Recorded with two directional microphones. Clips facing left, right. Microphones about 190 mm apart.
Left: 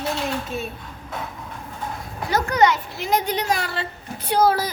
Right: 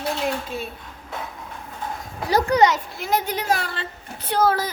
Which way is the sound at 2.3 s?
35° right (ahead or behind).